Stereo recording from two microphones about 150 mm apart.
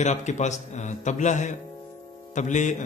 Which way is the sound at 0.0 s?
50° left (ahead or behind).